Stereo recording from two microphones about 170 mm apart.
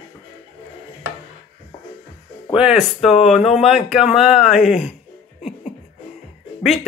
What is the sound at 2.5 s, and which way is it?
Speech, 5° right (ahead or behind).